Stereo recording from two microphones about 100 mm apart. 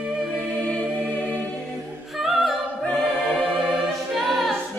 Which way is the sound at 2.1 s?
Centre (ahead or behind).